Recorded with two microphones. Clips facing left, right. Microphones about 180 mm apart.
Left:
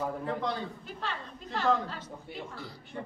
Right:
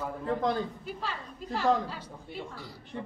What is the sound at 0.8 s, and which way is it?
Throat clearing, 5° right (ahead or behind).